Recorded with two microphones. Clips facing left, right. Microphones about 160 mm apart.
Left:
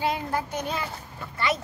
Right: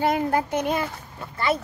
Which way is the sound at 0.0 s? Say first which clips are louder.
Right 5 dB; 50° right (ahead or behind).